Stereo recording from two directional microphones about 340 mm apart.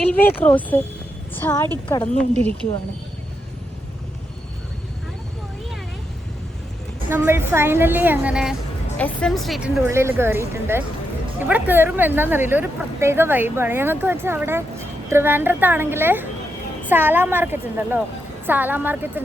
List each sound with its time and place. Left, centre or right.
0.1 s a woman's voice: centre
2.4 s speech: centre
7.1 s speech: centre